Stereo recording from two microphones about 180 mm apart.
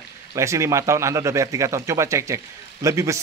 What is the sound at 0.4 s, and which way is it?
Speech, 15° right (ahead or behind).